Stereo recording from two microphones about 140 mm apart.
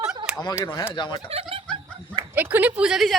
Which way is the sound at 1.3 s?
45° right (ahead or behind).